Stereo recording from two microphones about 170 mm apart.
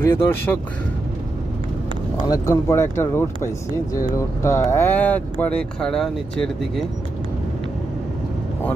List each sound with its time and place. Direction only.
0.0 s speech: 15° left (ahead or behind)
2.2 s speech: 20° left (ahead or behind)
4.4 s speech: 15° left (ahead or behind)